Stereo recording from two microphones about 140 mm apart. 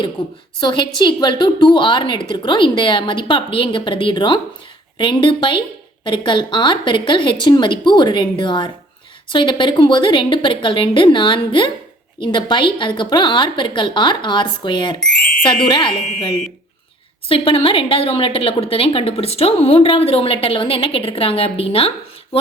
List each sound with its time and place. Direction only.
0.2 s a woman's voice: 30° left (ahead or behind)
17.2 s a woman's voice: 40° left (ahead or behind)